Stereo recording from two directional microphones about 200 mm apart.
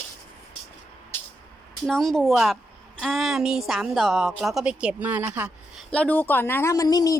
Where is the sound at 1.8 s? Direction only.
Centre (ahead or behind).